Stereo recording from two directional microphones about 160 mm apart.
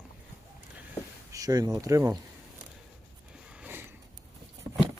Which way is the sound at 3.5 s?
10° right (ahead or behind).